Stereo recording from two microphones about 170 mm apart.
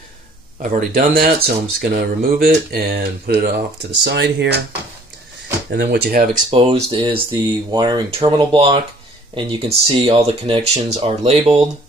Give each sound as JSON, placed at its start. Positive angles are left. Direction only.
{"t": 0.6, "sound": "speech", "side_deg": -55}
{"t": 4.0, "sound": "speech", "side_deg": -90}
{"t": 5.7, "sound": "speech", "side_deg": -75}
{"t": 6.5, "sound": "speech", "side_deg": -30}